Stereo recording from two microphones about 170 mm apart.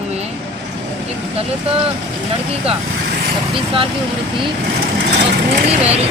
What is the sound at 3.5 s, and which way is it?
Speech, 30° right (ahead or behind).